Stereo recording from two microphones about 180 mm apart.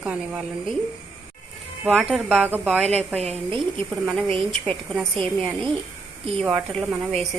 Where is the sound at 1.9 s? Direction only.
5° right (ahead or behind).